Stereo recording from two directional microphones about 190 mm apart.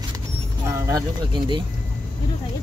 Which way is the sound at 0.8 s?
20° right (ahead or behind).